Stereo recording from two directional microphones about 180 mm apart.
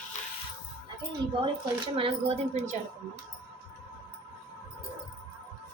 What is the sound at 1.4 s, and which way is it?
Speech, 30° right (ahead or behind).